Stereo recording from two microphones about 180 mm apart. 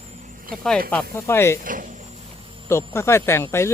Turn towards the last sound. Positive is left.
turn(degrees=15)  # may be behind; listen again after turning